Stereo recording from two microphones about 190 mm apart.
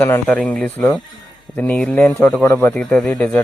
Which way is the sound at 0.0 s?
5° left (ahead or behind).